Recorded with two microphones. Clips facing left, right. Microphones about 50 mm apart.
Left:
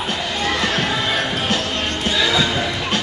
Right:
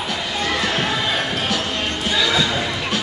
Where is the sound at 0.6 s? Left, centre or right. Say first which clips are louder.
Left 1 dB; centre.